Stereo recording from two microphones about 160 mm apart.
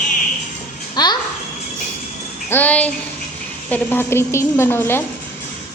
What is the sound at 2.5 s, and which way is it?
A woman's voice, 10° left (ahead or behind).